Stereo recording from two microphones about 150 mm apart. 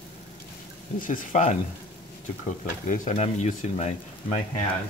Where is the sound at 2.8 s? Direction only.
50° left (ahead or behind).